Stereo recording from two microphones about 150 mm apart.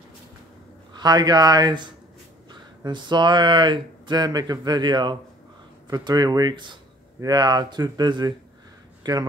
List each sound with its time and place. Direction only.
0.9 s speech: 25° right (ahead or behind)